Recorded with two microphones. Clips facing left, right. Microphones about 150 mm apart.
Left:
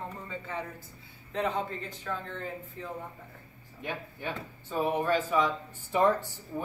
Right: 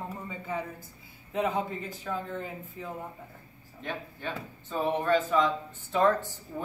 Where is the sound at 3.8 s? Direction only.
10° left (ahead or behind).